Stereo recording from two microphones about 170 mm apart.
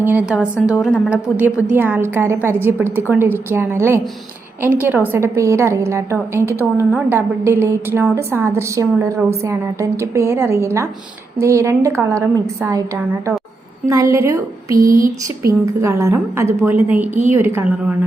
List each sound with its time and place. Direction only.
0.0 s a woman's voice: 10° right (ahead or behind)
14.9 s a sound: 55° right (ahead or behind)
15.6 s a woman's voice: 15° right (ahead or behind)